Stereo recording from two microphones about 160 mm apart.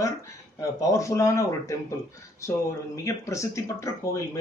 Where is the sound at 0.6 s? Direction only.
20° left (ahead or behind).